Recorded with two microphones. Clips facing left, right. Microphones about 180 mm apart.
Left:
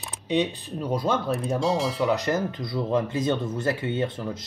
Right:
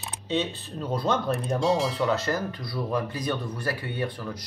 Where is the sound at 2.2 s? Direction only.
20° left (ahead or behind).